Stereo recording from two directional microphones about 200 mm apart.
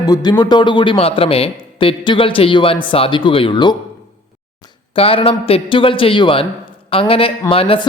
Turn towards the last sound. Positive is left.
turn(degrees=25)  # may be behind; listen again after turning